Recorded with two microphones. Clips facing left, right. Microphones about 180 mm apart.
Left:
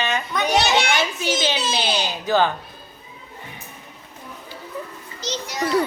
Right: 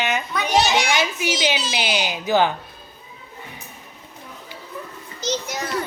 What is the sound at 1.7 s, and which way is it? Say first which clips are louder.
Speech: even; 15° right (ahead or behind).